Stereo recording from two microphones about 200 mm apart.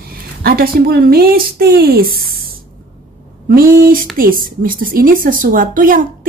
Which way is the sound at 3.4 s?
45° right (ahead or behind).